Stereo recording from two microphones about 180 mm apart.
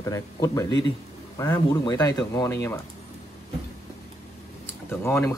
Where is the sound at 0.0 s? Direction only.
20° left (ahead or behind).